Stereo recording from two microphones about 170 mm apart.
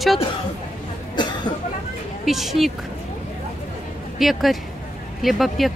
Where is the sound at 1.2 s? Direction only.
25° left (ahead or behind).